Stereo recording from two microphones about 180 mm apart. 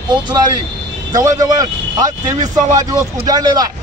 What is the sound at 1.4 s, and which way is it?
A man's voice, 20° right (ahead or behind).